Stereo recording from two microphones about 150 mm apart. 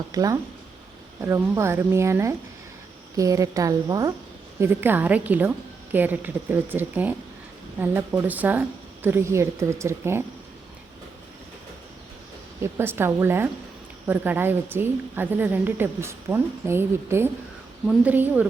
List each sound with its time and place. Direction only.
0.1 s a woman's voice: 25° right (ahead or behind)
12.7 s a woman's voice: 15° right (ahead or behind)